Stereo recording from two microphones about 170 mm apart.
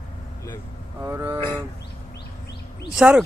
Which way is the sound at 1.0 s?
15° right (ahead or behind).